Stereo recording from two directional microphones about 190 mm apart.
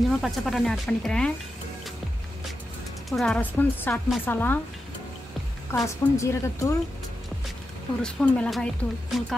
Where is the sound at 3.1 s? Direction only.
Centre (ahead or behind).